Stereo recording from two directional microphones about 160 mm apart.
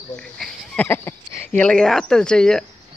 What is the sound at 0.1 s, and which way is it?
Goat, 5° left (ahead or behind).